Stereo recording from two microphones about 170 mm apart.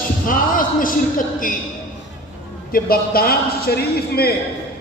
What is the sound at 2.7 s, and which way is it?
A man's voice, 60° left (ahead or behind).